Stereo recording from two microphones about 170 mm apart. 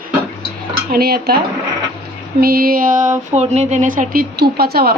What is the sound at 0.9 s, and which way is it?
Dishes, 65° right (ahead or behind).